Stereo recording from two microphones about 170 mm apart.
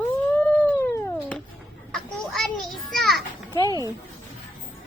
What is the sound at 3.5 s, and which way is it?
Music, 25° left (ahead or behind).